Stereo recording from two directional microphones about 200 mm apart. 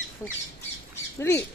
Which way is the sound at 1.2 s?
15° left (ahead or behind).